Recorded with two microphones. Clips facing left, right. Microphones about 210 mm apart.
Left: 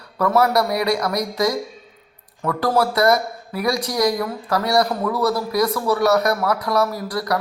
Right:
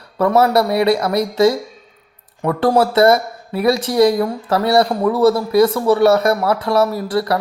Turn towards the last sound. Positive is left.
turn(degrees=-25)  # may be behind; listen again after turning